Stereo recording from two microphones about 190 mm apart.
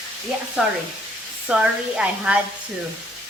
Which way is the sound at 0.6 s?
5° right (ahead or behind).